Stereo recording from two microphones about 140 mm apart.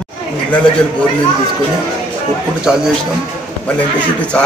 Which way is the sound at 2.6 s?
5° right (ahead or behind).